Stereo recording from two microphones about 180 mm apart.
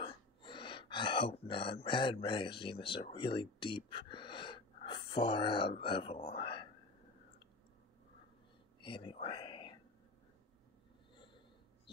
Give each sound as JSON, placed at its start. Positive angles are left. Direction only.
{"t": 0.0, "sound": "speech", "side_deg": 30}
{"t": 8.8, "sound": "speech", "side_deg": 30}